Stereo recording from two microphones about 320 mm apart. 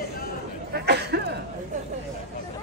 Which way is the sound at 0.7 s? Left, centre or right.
Right.